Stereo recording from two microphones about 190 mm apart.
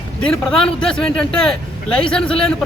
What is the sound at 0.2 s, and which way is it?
A man's voice, 5° left (ahead or behind).